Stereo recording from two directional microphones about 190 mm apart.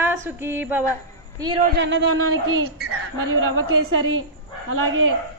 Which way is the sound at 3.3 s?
90° right.